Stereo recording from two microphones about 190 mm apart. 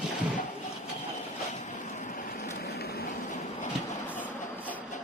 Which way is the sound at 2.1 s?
50° left (ahead or behind).